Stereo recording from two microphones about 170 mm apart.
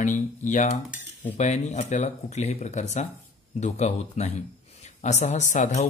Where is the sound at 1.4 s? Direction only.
45° left (ahead or behind).